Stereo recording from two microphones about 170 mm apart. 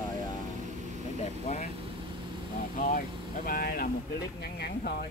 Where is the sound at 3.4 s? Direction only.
60° left (ahead or behind).